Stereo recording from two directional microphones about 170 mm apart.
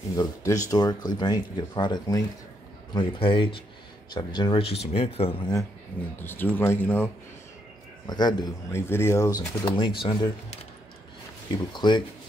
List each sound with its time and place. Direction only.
0.1 s speech: 20° left (ahead or behind)
6.2 s speech: 10° left (ahead or behind)
8.1 s speech: 25° left (ahead or behind)
8.8 s speech: 15° left (ahead or behind)
9.4 s speech: 30° left (ahead or behind)